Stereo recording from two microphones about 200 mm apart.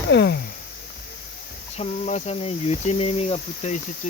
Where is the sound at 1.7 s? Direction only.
35° left (ahead or behind).